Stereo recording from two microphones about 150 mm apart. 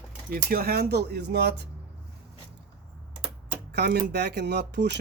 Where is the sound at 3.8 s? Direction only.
90° right.